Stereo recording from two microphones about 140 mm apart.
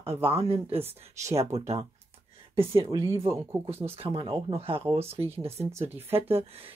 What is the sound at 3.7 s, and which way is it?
Speech, 45° right (ahead or behind).